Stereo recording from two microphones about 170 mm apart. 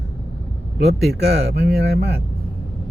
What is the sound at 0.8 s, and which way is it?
Speech, 75° right (ahead or behind).